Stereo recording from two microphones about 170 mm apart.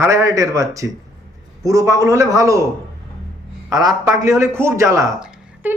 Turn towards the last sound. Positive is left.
turn(degrees=-10)  # may be behind; listen again after turning